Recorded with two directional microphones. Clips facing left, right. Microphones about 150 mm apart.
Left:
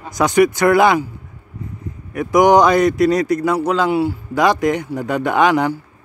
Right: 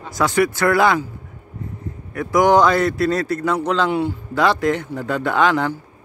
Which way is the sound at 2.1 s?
15° left (ahead or behind).